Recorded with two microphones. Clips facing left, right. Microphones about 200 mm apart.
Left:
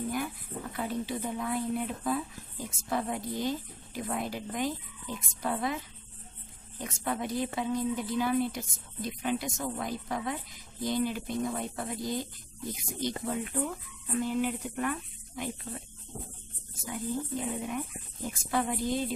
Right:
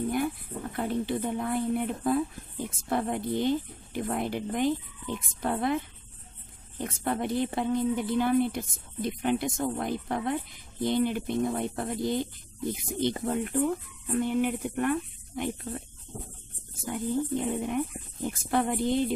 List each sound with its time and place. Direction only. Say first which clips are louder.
0.7 s a woman's voice: right 5 dB; 55° right (ahead or behind)
16.8 s a woman's voice: right 5 dB; 55° right (ahead or behind)